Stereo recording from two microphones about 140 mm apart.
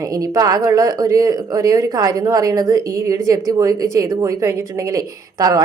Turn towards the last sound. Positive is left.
turn(degrees=-25)  # may be behind; listen again after turning